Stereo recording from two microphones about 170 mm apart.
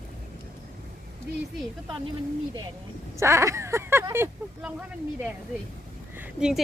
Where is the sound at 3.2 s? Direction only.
15° right (ahead or behind).